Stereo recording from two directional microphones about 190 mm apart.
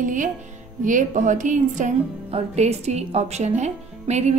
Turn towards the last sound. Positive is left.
turn(degrees=-35)  # may be behind; listen again after turning